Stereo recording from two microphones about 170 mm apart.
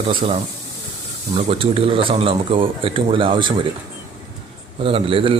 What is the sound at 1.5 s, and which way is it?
Speech, 35° right (ahead or behind).